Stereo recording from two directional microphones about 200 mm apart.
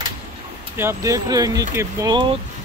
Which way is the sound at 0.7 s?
15° right (ahead or behind).